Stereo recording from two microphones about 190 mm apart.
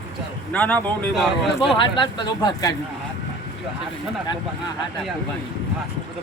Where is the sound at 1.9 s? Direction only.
25° left (ahead or behind).